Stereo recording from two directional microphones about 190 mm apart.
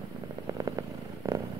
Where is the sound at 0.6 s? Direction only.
20° right (ahead or behind).